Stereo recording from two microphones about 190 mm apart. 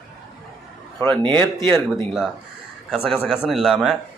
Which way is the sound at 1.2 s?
25° right (ahead or behind).